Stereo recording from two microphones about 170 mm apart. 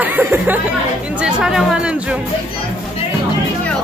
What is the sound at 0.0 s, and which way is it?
Speech, 10° right (ahead or behind).